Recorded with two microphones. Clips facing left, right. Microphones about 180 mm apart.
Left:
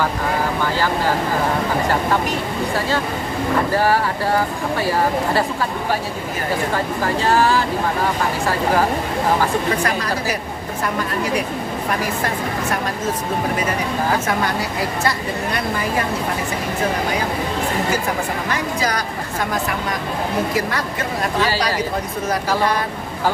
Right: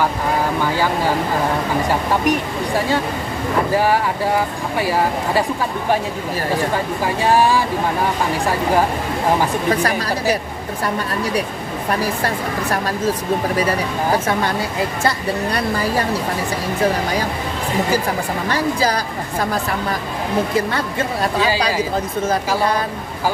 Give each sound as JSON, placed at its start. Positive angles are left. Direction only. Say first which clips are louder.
{"t": 3.7, "sound": "speech", "louder": "right 2 dB", "side_deg": -15}
{"t": 7.3, "sound": "speech", "louder": "right 2 dB", "side_deg": -15}
{"t": 15.0, "sound": "speech", "louder": "right 2 dB", "side_deg": -35}
{"t": 18.5, "sound": "speech", "louder": "right 6 dB", "side_deg": -30}
{"t": 20.5, "sound": "speech", "louder": "right 2 dB", "side_deg": -25}